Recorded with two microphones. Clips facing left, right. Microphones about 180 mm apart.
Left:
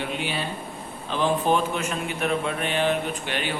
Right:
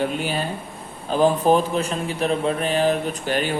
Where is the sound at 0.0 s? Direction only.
40° right (ahead or behind).